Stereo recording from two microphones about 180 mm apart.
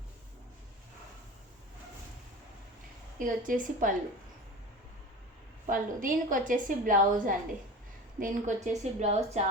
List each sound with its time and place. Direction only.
3.2 s a woman's voice: 50° right (ahead or behind)
5.6 s a woman's voice: 50° right (ahead or behind)